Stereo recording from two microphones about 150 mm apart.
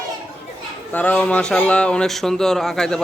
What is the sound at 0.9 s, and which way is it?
Speech, 10° left (ahead or behind).